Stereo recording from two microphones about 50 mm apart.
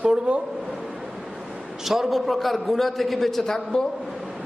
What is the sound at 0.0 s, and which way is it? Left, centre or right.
Speech, centre.